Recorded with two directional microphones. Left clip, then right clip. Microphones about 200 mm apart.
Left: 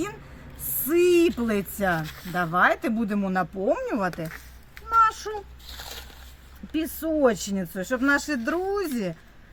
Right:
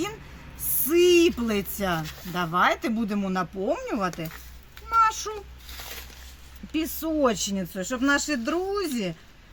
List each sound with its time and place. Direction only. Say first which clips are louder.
0.9 s speech: right 1 dB; 20° left (ahead or behind)
4.9 s a sound: left 1 dB; centre (ahead or behind)
6.7 s speech: left 1 dB; 5° left (ahead or behind)